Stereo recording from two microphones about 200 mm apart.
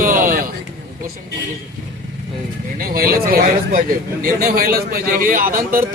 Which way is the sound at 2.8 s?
45° right (ahead or behind).